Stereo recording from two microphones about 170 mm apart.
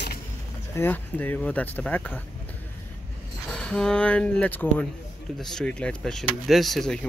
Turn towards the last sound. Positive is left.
turn(degrees=0)  # may be behind; listen again after turning